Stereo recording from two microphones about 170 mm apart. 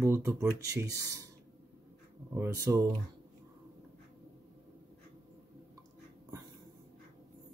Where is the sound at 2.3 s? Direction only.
15° right (ahead or behind).